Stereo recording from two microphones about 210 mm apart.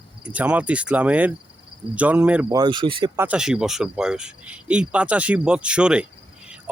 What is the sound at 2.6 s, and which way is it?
Speech, 20° right (ahead or behind).